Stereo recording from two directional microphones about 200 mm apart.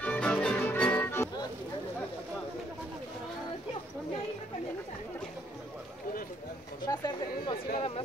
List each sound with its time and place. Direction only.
0.0 s music: 5° left (ahead or behind)
6.9 s speech: 20° left (ahead or behind)
7.7 s speech: 30° left (ahead or behind)